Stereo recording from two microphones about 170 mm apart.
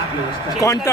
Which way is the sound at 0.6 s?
20° left (ahead or behind).